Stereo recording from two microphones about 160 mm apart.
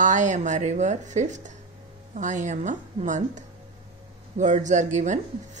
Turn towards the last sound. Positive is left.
turn(degrees=-50)  # may be behind; listen again after turning